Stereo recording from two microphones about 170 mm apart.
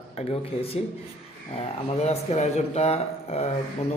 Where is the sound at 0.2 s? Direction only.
40° left (ahead or behind).